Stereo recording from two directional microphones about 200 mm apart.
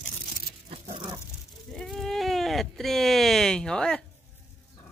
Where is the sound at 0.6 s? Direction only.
30° right (ahead or behind).